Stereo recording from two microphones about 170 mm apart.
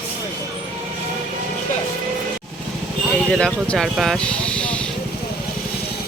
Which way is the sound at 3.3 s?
5° left (ahead or behind).